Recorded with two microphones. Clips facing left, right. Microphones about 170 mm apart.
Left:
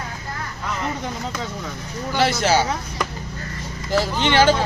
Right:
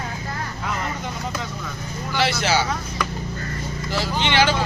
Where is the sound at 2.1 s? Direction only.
45° left (ahead or behind).